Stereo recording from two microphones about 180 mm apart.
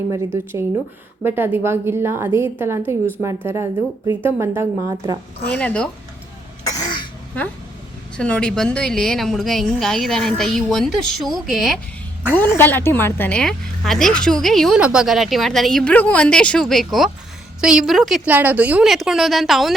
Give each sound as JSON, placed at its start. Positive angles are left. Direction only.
{"t": 0.3, "sound": "a woman's voice", "side_deg": -15}
{"t": 5.5, "sound": "speech", "side_deg": 5}
{"t": 6.7, "sound": "cough", "side_deg": 20}
{"t": 8.1, "sound": "a woman's voice", "side_deg": 5}